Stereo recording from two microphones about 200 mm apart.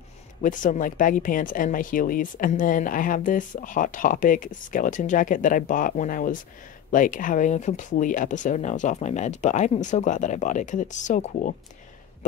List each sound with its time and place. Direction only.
0.4 s speech: 40° left (ahead or behind)